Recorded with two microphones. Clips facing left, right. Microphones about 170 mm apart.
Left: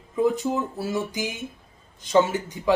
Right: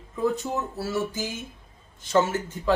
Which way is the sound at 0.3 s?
15° left (ahead or behind).